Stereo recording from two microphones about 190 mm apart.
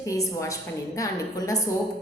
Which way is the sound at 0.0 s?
15° left (ahead or behind).